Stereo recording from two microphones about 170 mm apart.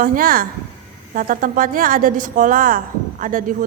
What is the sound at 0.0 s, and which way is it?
A woman's voice, 55° right (ahead or behind).